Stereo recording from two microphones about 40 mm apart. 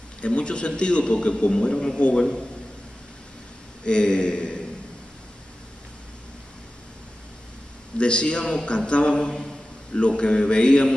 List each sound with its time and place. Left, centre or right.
0.2 s a man's voice: left
3.8 s a man's voice: left
8.0 s a man's voice: left